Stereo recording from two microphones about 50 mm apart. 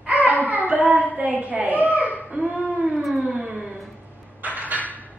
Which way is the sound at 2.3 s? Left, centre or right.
Right.